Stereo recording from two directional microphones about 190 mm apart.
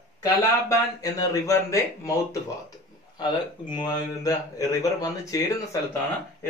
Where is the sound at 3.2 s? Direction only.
25° left (ahead or behind).